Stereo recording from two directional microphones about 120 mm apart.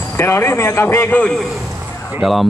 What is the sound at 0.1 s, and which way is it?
A man's voice, 20° left (ahead or behind).